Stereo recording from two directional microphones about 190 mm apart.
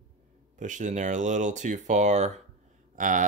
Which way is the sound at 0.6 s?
40° right (ahead or behind).